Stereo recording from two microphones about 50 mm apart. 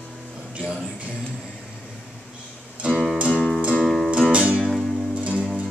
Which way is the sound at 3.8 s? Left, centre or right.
Centre.